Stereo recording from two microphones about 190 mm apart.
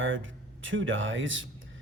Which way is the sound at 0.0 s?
90° right.